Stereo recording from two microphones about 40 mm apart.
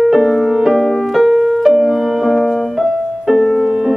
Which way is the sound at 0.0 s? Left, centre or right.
Centre.